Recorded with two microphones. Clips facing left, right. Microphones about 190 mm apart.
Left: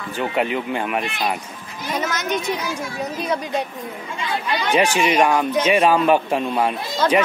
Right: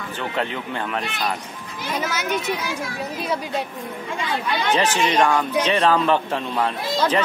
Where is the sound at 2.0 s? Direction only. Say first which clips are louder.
Left 1 dB; 10° right (ahead or behind).